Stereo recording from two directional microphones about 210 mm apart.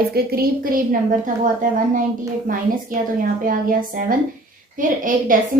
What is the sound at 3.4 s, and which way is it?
A woman's voice, 40° right (ahead or behind).